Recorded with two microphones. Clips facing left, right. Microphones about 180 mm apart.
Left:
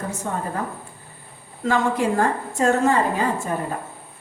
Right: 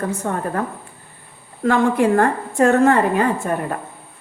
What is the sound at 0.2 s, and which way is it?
Speech, 55° right (ahead or behind).